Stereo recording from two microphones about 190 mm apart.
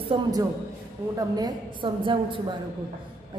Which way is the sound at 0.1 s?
20° right (ahead or behind).